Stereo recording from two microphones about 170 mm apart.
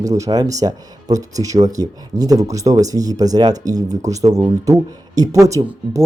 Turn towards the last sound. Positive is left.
turn(degrees=-15)  # may be behind; listen again after turning